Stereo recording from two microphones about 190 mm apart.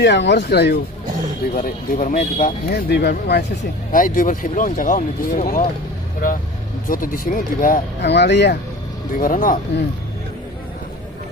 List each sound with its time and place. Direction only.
0.0 s speech: 65° left (ahead or behind)
1.5 s speech: 45° left (ahead or behind)
2.9 s speech: 60° left (ahead or behind)
3.9 s speech: 45° left (ahead or behind)
6.8 s speech: 45° left (ahead or behind)
9.1 s speech: 45° left (ahead or behind)